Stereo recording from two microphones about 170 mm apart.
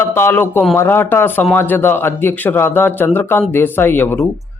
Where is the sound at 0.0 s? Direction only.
15° left (ahead or behind).